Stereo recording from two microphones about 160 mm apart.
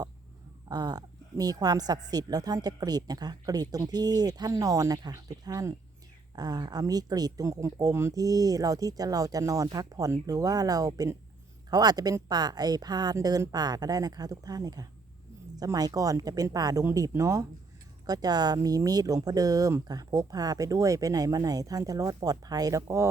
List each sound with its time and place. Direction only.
0.7 s a woman's voice: 25° right (ahead or behind)